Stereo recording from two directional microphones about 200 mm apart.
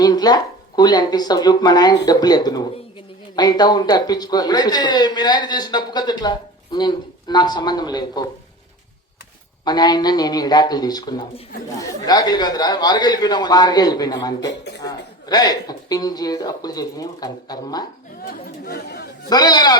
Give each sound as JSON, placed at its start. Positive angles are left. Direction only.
{"t": 0.0, "sound": "a man's voice", "side_deg": 20}
{"t": 9.6, "sound": "a man's voice", "side_deg": 20}
{"t": 14.4, "sound": "speech", "side_deg": 60}
{"t": 14.8, "sound": "a man's voice", "side_deg": 20}
{"t": 18.6, "sound": "speech", "side_deg": 50}
{"t": 19.3, "sound": "a man's voice", "side_deg": 20}